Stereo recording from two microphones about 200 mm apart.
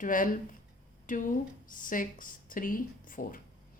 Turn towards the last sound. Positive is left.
turn(degrees=45)  # may be behind; listen again after turning